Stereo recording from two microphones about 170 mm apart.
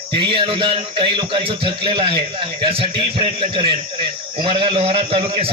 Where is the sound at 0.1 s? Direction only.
30° right (ahead or behind).